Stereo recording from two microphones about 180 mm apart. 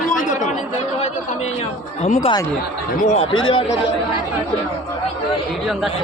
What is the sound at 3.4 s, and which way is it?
Speech, 30° left (ahead or behind).